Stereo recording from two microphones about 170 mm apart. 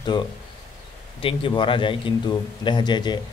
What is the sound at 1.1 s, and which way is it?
Speech, 30° left (ahead or behind).